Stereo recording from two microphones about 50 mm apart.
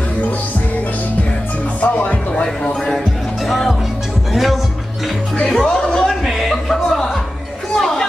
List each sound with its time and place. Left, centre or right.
1.8 s music: left
2.4 s a sound: centre
3.4 s music: centre
5.3 s music: centre
6.2 s music: centre
7.7 s chatter: centre